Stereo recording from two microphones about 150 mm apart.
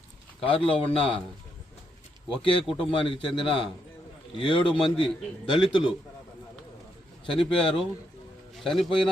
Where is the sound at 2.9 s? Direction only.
35° left (ahead or behind).